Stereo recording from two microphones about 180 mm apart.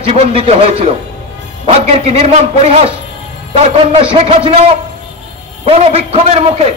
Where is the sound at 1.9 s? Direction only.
40° right (ahead or behind).